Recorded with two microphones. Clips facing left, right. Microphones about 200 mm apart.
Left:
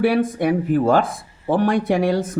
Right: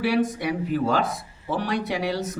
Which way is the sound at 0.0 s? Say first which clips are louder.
Left 5 dB; 55° left (ahead or behind).